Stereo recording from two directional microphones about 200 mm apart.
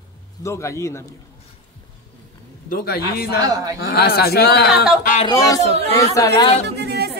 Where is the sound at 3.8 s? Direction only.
55° left (ahead or behind).